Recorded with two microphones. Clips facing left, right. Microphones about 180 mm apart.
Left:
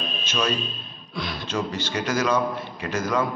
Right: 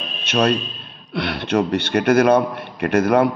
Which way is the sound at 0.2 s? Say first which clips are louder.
Right 9 dB; 65° right (ahead or behind).